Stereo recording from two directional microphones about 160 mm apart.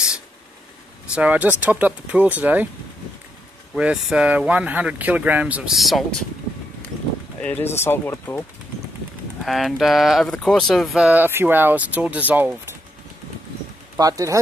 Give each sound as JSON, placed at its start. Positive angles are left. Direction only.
{"t": 1.1, "sound": "speech", "side_deg": -10}
{"t": 3.7, "sound": "speech", "side_deg": -5}
{"t": 7.4, "sound": "speech", "side_deg": 15}
{"t": 9.4, "sound": "speech", "side_deg": 0}
{"t": 13.9, "sound": "speech", "side_deg": -20}